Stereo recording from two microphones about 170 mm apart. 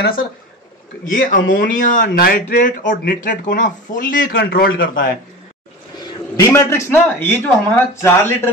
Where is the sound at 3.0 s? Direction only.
65° left (ahead or behind).